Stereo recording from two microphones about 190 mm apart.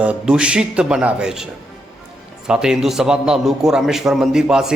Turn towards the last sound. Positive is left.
turn(degrees=-5)  # may be behind; listen again after turning